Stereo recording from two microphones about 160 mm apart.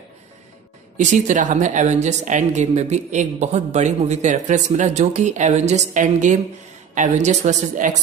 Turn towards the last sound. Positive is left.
turn(degrees=-50)  # may be behind; listen again after turning